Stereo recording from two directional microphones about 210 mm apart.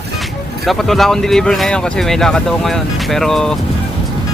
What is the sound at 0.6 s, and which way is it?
Speech, centre (ahead or behind).